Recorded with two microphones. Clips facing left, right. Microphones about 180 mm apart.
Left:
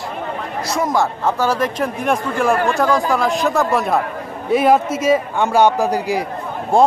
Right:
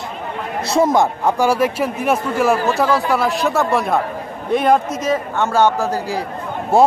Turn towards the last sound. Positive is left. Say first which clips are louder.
# right 1 dB
turn(degrees=-5)  # may be behind; listen again after turning